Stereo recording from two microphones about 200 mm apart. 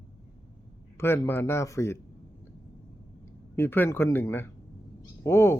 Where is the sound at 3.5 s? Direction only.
10° left (ahead or behind).